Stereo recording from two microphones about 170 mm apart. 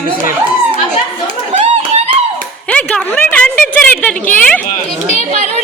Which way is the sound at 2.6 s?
5° left (ahead or behind).